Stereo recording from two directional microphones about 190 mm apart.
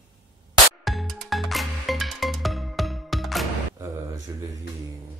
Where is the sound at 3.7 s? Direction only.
15° right (ahead or behind).